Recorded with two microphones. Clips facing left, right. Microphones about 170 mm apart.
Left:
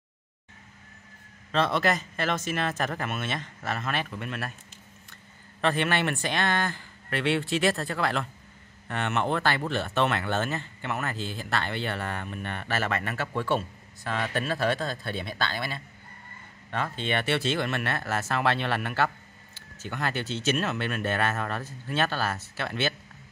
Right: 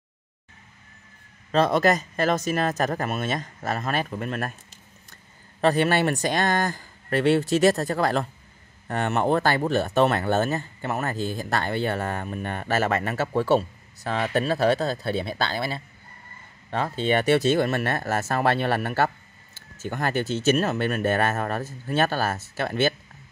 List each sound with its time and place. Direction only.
1.5 s speech: 40° right (ahead or behind)
5.6 s a man's voice: 40° right (ahead or behind)